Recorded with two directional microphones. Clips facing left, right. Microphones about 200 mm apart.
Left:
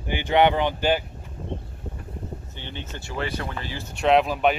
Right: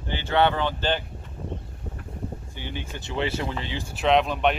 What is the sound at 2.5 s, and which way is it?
Speech, 10° right (ahead or behind).